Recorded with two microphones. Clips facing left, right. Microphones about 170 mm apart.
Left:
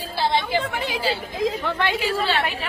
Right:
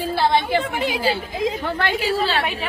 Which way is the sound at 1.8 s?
45° right (ahead or behind).